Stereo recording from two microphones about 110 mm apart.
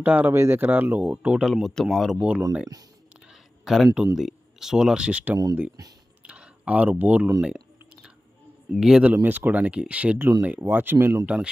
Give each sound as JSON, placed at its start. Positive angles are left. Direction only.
{"t": 0.0, "sound": "speech", "side_deg": -15}
{"t": 2.1, "sound": "speech", "side_deg": -10}
{"t": 6.2, "sound": "a sound", "side_deg": -10}
{"t": 7.4, "sound": "clicking", "side_deg": -10}
{"t": 8.7, "sound": "speech", "side_deg": -5}
{"t": 9.1, "sound": "speech", "side_deg": -15}